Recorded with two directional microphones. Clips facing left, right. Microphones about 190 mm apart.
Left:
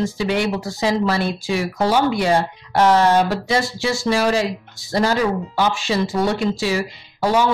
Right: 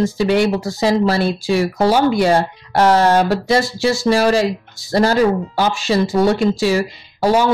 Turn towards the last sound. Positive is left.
turn(degrees=-40)  # may be behind; listen again after turning